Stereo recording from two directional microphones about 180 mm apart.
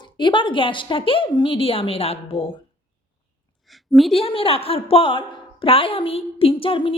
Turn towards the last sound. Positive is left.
turn(degrees=30)  # may be behind; listen again after turning